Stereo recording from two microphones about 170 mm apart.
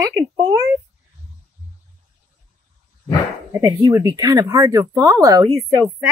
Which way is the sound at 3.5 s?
20° right (ahead or behind).